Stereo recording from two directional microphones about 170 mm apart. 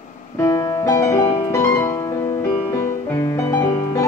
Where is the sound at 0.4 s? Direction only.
15° left (ahead or behind).